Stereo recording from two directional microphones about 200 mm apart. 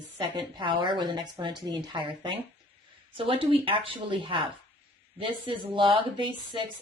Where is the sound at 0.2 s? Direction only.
25° right (ahead or behind).